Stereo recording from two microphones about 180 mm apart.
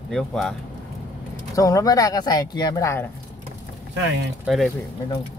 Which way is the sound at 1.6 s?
20° left (ahead or behind).